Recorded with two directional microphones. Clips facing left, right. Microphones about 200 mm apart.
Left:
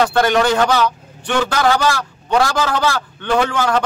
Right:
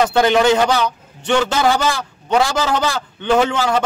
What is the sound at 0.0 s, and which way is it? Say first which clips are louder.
A man's voice: right 1 dB; 15° right (ahead or behind).